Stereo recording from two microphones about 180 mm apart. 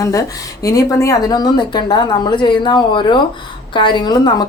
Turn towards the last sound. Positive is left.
turn(degrees=25)  # may be behind; listen again after turning